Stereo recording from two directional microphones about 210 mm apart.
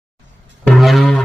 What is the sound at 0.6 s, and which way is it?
Music, centre (ahead or behind).